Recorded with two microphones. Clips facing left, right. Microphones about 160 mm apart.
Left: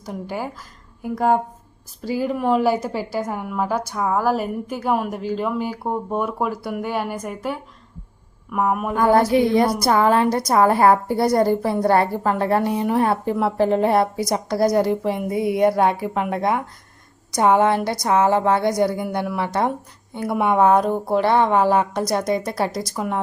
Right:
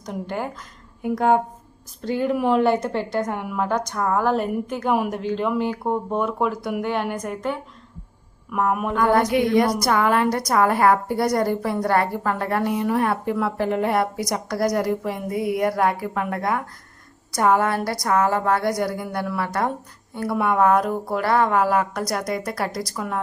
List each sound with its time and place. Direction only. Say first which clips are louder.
0.0 s a woman's voice: even; 5° left (ahead or behind)
9.3 s a woman's voice: left 2 dB; 30° left (ahead or behind)